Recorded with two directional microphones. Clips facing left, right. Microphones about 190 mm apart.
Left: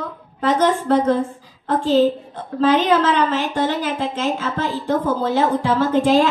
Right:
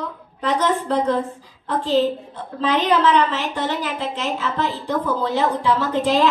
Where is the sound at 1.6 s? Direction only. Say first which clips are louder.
Left 3 dB; 45° left (ahead or behind).